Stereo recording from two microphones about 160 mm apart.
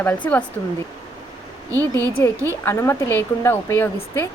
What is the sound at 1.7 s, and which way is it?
Speech, 20° right (ahead or behind).